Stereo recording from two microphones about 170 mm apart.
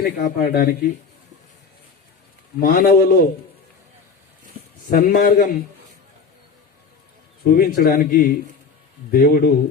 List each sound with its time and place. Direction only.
0.0 s speech: 55° left (ahead or behind)
2.6 s speech: 60° left (ahead or behind)
4.9 s speech: 55° left (ahead or behind)
7.5 s speech: 55° left (ahead or behind)